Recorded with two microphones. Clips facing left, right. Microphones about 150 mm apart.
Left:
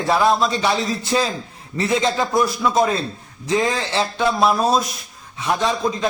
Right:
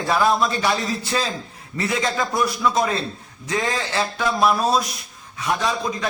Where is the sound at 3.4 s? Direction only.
25° left (ahead or behind).